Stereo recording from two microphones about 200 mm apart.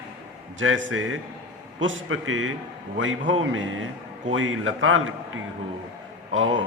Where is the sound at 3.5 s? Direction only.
85° right.